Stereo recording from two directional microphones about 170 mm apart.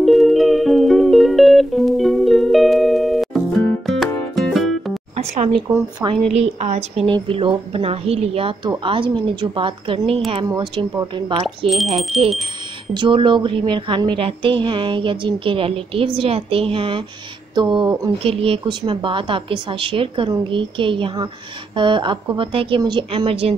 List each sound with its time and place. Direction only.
0.0 s music: centre (ahead or behind)
5.1 s a sound: 40° right (ahead or behind)
6.0 s a woman's voice: 35° right (ahead or behind)